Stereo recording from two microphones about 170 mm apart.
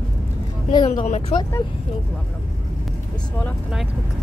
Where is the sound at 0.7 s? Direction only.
25° left (ahead or behind).